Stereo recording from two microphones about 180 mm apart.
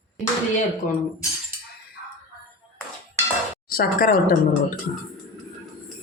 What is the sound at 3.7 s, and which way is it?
Speech, 55° left (ahead or behind).